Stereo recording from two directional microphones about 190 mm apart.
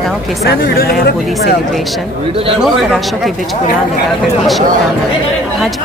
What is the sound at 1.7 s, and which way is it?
Speech, centre (ahead or behind).